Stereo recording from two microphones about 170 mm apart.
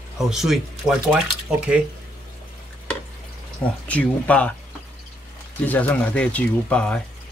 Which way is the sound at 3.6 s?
10° left (ahead or behind).